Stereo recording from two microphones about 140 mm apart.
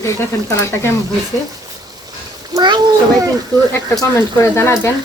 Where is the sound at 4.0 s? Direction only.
20° left (ahead or behind).